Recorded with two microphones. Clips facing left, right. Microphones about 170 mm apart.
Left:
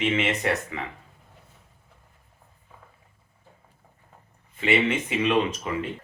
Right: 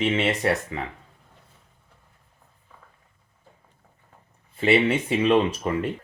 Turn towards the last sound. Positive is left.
turn(degrees=-40)  # may be behind; listen again after turning